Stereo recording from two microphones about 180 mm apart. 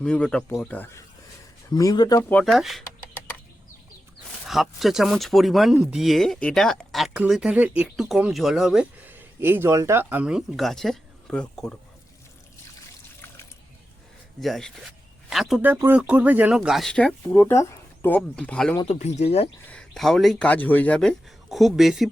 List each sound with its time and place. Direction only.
0.0 s speech: 5° left (ahead or behind); by 2.2 s 20° left (ahead or behind)
2.3 s speech: centre (ahead or behind)
4.4 s speech: centre (ahead or behind)
14.4 s speech: centre (ahead or behind)
17.3 s speech: 15° left (ahead or behind)
18.8 s speech: 35° left (ahead or behind)
19.6 s speech: 5° left (ahead or behind)